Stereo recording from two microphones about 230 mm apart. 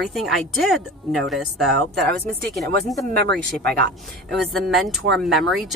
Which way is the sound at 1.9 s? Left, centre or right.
Right.